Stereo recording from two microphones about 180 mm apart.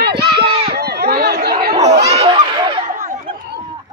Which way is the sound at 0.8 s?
65° right (ahead or behind).